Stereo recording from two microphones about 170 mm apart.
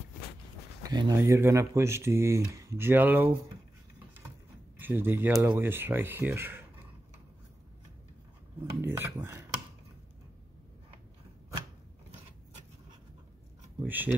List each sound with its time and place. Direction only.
0.8 s speech: 25° right (ahead or behind)
4.7 s speech: 10° right (ahead or behind)
8.8 s speech: 15° right (ahead or behind)
13.8 s speech: 10° right (ahead or behind)